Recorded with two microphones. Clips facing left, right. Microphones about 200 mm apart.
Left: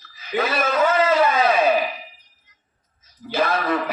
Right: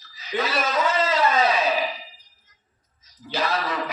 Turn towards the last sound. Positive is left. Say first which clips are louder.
# left 5 dB
turn(degrees=55)  # may be behind; listen again after turning